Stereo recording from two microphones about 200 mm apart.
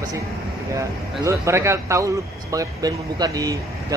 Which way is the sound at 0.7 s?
15° right (ahead or behind).